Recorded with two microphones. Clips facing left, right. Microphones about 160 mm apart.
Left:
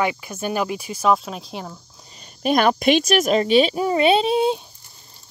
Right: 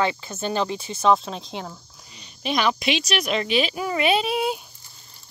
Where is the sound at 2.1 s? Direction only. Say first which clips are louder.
Left 6 dB; 45° left (ahead or behind).